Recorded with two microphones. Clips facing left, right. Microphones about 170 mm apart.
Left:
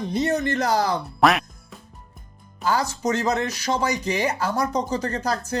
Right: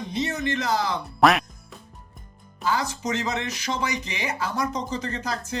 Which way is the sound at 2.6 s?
40° left (ahead or behind).